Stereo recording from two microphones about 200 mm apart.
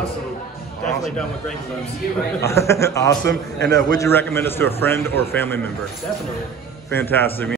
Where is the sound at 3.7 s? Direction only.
15° left (ahead or behind).